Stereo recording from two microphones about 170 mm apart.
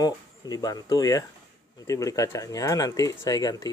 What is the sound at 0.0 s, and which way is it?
Speech, 20° left (ahead or behind).